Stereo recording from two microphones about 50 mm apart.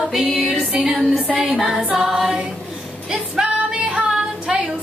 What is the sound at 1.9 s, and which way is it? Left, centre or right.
Music, centre.